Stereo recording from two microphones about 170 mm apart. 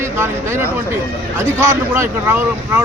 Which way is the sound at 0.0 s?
15° right (ahead or behind).